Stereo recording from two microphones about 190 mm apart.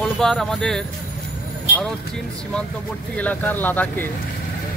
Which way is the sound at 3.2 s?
10° left (ahead or behind).